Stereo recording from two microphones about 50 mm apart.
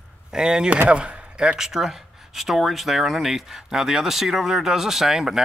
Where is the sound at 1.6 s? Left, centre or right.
Centre.